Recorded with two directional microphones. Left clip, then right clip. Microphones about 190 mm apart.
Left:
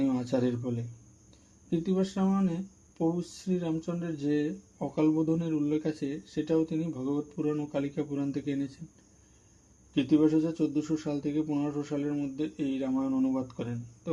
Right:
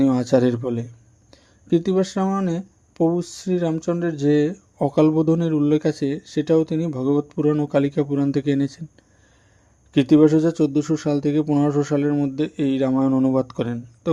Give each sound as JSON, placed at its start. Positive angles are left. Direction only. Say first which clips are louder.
{"t": 0.0, "sound": "speech", "louder": "right 11 dB", "side_deg": -40}
{"t": 9.9, "sound": "speech", "louder": "right 10 dB", "side_deg": -40}